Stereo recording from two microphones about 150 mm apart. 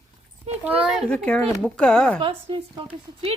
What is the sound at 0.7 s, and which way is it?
Speech, 10° right (ahead or behind).